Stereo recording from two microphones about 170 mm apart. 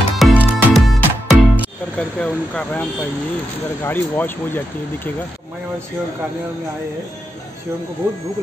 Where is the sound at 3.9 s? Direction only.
10° left (ahead or behind).